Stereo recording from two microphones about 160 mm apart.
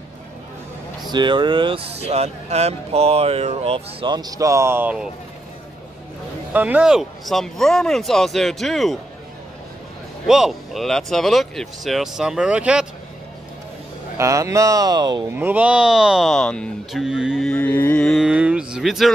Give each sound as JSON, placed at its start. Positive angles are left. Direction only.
{"t": 1.1, "sound": "speech", "side_deg": -30}
{"t": 6.5, "sound": "speech", "side_deg": -10}
{"t": 10.2, "sound": "speech", "side_deg": 0}
{"t": 14.1, "sound": "speech", "side_deg": -20}
{"t": 15.3, "sound": "speech", "side_deg": -10}
{"t": 17.5, "sound": "music", "side_deg": 10}
{"t": 18.0, "sound": "speech", "side_deg": 0}